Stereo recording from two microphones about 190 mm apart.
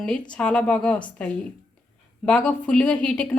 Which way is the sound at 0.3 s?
5° left (ahead or behind).